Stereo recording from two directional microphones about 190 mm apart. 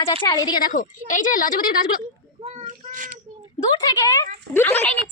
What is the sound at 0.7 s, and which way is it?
Speech, 45° left (ahead or behind).